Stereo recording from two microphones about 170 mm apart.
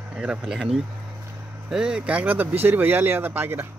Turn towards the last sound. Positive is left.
turn(degrees=-15)  # may be behind; listen again after turning